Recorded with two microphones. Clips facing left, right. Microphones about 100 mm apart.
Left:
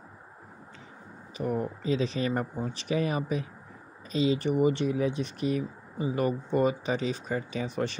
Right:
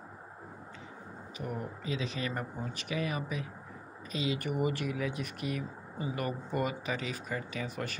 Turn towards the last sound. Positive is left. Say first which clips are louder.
# left 6 dB
turn(degrees=25)  # may be behind; listen again after turning